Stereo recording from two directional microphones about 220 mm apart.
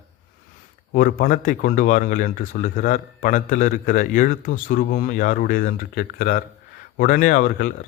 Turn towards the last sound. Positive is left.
turn(degrees=40)  # may be behind; listen again after turning